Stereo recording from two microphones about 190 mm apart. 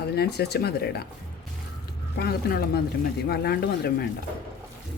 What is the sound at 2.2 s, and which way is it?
Speech, 55° left (ahead or behind).